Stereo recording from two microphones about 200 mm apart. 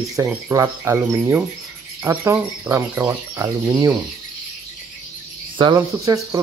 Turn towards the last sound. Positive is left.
turn(degrees=-15)  # may be behind; listen again after turning